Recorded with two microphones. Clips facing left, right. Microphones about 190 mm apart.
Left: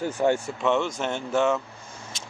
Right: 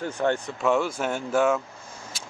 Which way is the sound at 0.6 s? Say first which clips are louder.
Right 2 dB; 10° right (ahead or behind).